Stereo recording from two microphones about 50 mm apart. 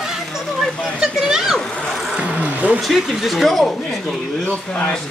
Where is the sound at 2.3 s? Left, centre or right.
Right.